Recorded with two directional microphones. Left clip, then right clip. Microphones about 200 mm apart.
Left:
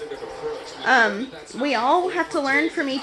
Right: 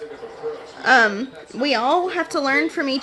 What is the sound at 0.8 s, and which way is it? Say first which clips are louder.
A woman's voice: right 3 dB; 20° right (ahead or behind).